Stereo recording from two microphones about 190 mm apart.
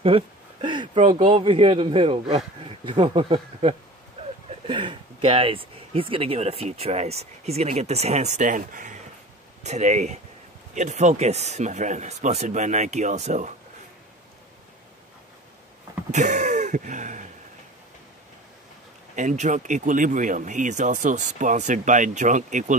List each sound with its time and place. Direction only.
0.0 s speech: 30° right (ahead or behind)
16.1 s throat clearing: 40° right (ahead or behind)
19.1 s speech: 40° right (ahead or behind)